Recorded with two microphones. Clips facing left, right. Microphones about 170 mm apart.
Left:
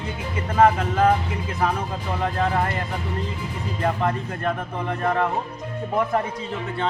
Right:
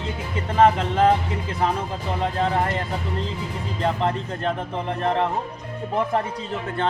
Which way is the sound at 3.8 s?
25° right (ahead or behind).